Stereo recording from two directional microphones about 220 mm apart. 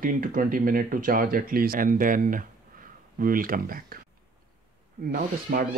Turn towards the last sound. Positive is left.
turn(degrees=-40)  # may be behind; listen again after turning